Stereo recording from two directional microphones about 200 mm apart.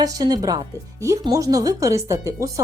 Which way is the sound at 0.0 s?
20° right (ahead or behind).